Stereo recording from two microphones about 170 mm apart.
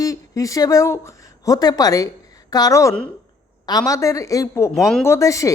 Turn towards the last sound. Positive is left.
turn(degrees=20)  # may be behind; listen again after turning